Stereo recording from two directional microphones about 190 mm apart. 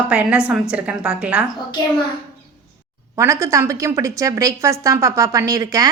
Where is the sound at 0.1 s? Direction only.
5° right (ahead or behind).